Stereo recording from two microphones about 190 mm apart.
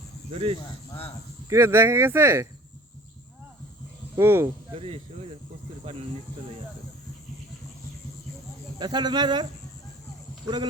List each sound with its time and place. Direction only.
0.3 s speech: 30° right (ahead or behind)
1.5 s speech: 15° right (ahead or behind)
4.1 s speech: 10° right (ahead or behind)
4.7 s speech: 30° right (ahead or behind)
8.8 s speech: 20° right (ahead or behind)